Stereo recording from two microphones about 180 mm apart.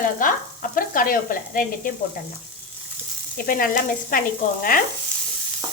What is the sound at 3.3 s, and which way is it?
Frying, 50° left (ahead or behind).